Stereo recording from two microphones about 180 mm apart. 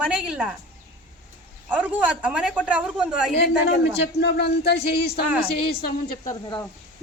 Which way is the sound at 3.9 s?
70° left (ahead or behind).